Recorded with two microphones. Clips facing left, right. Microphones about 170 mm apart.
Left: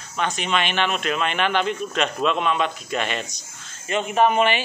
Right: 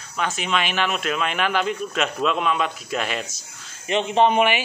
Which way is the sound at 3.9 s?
25° right (ahead or behind).